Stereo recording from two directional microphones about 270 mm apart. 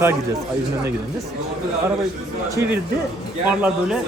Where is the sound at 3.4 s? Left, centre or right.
Centre.